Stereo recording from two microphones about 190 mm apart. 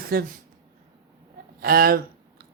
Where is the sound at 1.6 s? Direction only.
55° right (ahead or behind).